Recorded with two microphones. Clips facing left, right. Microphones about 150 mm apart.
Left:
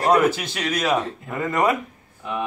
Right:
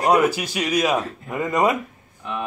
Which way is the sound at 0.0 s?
15° right (ahead or behind).